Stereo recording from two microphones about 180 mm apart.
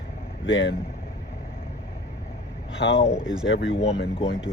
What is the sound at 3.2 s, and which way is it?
Speech, 5° right (ahead or behind).